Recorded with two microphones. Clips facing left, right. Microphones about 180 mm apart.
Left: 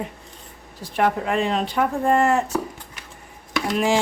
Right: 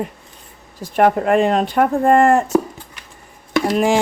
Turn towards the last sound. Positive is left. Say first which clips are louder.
# right 4 dB
turn(degrees=-50)  # may be behind; listen again after turning